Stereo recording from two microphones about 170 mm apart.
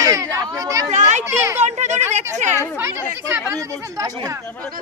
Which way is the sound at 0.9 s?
45° right (ahead or behind).